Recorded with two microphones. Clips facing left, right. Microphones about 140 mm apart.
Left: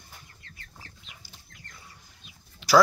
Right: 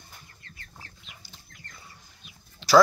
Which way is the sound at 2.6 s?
10° left (ahead or behind).